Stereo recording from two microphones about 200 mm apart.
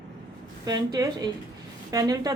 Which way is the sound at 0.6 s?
20° right (ahead or behind).